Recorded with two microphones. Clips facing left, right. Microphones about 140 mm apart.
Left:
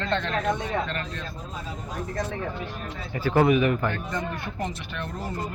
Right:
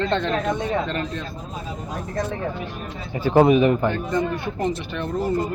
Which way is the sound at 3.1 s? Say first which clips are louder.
Right 5 dB; 20° right (ahead or behind).